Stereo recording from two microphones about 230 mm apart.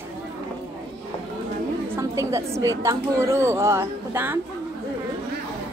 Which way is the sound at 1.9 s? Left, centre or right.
Centre.